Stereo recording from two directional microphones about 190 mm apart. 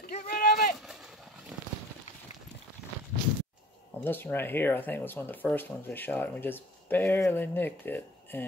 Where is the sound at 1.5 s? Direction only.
5° right (ahead or behind).